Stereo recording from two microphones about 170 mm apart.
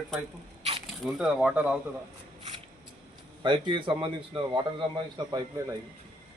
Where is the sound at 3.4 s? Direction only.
30° right (ahead or behind).